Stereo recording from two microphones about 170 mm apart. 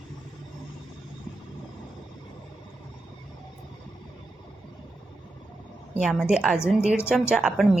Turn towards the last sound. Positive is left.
turn(degrees=0)  # may be behind; listen again after turning